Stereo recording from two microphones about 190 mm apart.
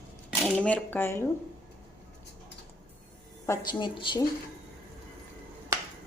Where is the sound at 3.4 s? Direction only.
15° left (ahead or behind).